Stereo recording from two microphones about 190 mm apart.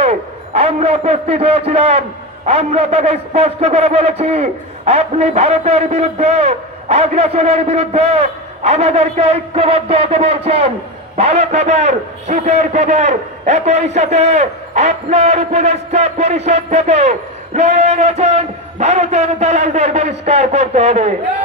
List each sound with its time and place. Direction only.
0.0 s a man's voice: 35° right (ahead or behind)